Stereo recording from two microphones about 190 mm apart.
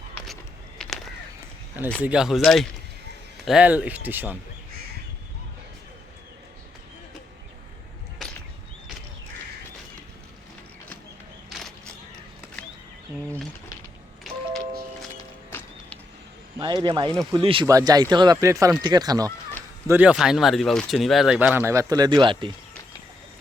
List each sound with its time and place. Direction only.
0.8 s crow: centre (ahead or behind)
2.0 s speech: 5° right (ahead or behind)
16.8 s speech: 25° right (ahead or behind)
19.9 s speech: 5° right (ahead or behind); by 22.5 s 25° right (ahead or behind)